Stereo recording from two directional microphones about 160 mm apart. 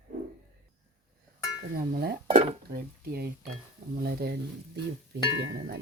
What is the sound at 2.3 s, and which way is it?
Dishes, 35° right (ahead or behind).